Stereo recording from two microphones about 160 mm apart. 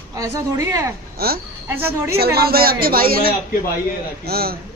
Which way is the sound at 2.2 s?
75° right (ahead or behind).